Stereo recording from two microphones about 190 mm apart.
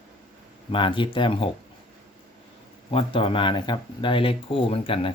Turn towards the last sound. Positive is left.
turn(degrees=30)  # may be behind; listen again after turning